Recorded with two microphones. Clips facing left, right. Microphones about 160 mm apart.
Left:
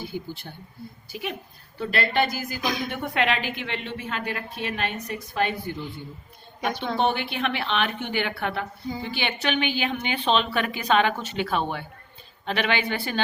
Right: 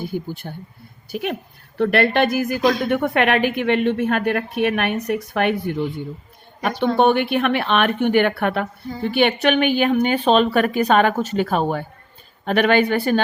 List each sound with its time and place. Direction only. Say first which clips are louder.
0.0 s a woman's voice: right 7 dB; 50° right (ahead or behind)